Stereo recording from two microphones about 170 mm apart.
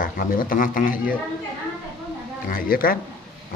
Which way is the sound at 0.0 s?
55° left (ahead or behind).